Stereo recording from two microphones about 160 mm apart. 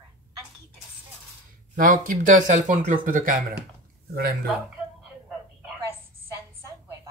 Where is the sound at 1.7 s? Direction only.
60° right (ahead or behind).